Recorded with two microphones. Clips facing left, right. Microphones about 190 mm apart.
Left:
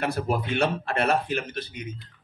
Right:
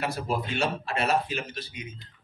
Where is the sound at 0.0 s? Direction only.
55° left (ahead or behind).